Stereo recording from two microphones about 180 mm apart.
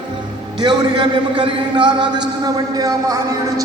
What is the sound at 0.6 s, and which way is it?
A man's voice, 25° right (ahead or behind).